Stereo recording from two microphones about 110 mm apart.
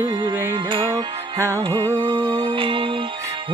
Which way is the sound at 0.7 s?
50° right (ahead or behind).